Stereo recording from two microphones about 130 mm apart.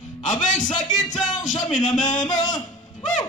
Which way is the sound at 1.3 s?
65° left (ahead or behind).